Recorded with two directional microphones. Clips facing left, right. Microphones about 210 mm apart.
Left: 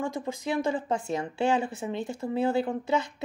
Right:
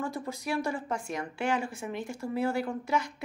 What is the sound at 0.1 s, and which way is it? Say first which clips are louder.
A woman's voice: left 3 dB; 20° left (ahead or behind).